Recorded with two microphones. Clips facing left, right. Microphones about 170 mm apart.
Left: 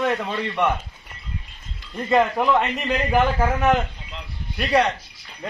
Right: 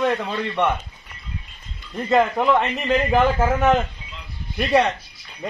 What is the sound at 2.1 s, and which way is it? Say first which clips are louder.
A man's voice: right 1 dB; centre (ahead or behind).